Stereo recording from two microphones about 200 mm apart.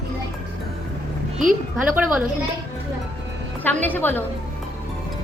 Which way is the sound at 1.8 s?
5° right (ahead or behind).